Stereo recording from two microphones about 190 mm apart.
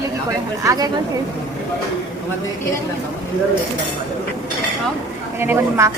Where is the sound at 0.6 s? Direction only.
20° right (ahead or behind).